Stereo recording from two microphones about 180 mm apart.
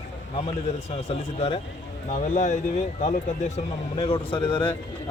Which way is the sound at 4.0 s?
30° left (ahead or behind).